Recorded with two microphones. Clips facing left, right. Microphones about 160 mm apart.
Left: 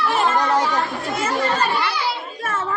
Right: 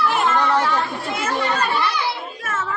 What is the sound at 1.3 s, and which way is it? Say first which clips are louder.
Speech: left 1 dB; 35° left (ahead or behind).